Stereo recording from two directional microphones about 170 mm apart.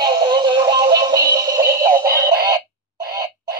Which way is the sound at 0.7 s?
25° right (ahead or behind).